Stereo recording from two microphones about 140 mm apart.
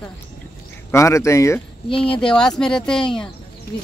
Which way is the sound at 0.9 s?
20° left (ahead or behind).